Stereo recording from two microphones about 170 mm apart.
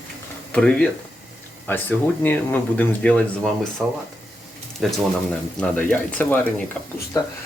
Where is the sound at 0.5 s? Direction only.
5° left (ahead or behind).